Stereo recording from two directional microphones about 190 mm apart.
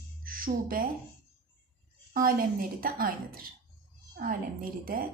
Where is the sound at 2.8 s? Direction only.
50° right (ahead or behind).